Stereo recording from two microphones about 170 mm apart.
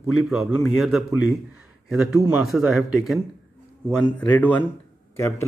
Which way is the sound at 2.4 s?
Centre (ahead or behind).